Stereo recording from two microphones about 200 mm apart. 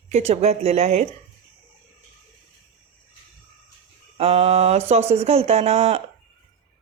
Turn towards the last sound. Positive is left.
turn(degrees=-30)  # may be behind; listen again after turning